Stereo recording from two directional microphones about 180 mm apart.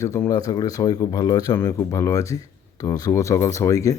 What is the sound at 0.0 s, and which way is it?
Speech, 15° left (ahead or behind).